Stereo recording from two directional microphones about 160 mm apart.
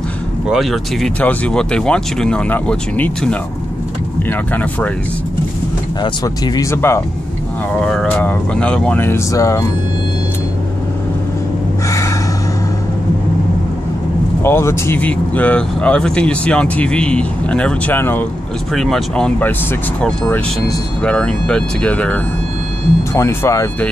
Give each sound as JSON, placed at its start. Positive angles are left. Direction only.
{"t": 0.5, "sound": "speech", "side_deg": 0}
{"t": 6.0, "sound": "speech", "side_deg": 25}
{"t": 7.8, "sound": "speech", "side_deg": 5}
{"t": 14.4, "sound": "speech", "side_deg": 15}
{"t": 18.7, "sound": "speech", "side_deg": 0}
{"t": 23.1, "sound": "speech", "side_deg": 20}